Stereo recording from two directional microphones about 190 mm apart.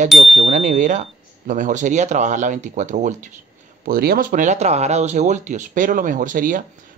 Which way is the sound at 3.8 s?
55° right (ahead or behind).